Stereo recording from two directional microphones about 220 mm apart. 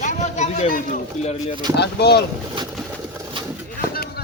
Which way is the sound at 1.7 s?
50° left (ahead or behind).